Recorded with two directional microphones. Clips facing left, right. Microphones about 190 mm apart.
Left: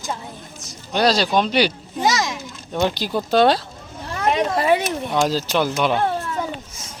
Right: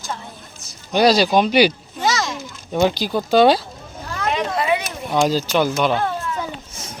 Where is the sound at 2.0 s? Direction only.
15° left (ahead or behind).